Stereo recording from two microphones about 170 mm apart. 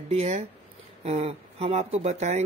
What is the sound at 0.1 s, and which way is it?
Speech, 35° right (ahead or behind).